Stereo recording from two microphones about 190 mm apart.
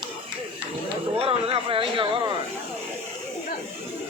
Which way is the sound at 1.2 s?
30° right (ahead or behind).